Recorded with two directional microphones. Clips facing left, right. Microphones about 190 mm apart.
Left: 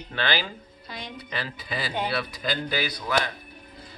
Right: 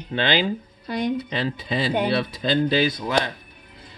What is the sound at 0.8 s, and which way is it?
Speech, 50° right (ahead or behind).